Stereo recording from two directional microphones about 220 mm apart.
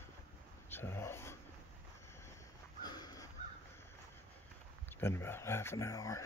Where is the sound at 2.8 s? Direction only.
20° left (ahead or behind).